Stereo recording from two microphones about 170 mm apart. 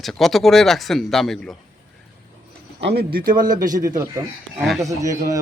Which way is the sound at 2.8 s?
80° right.